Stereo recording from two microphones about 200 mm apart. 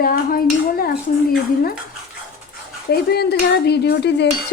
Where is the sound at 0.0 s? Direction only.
45° left (ahead or behind).